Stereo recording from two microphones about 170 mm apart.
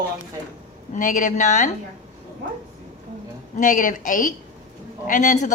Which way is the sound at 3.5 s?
50° left (ahead or behind).